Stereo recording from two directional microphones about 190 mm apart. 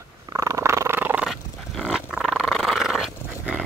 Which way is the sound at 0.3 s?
15° right (ahead or behind).